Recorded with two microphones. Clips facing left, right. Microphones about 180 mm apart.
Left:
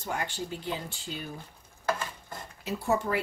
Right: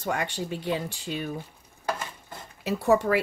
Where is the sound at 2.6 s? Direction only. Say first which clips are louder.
Right 6 dB; 70° right (ahead or behind).